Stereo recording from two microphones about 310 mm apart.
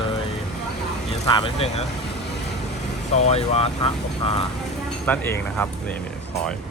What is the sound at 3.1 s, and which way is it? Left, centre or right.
Speech, left.